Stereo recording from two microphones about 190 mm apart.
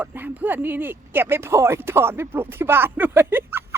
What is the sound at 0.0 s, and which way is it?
A woman's voice, 10° right (ahead or behind).